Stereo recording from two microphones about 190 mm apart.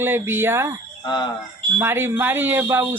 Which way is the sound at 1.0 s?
25° left (ahead or behind).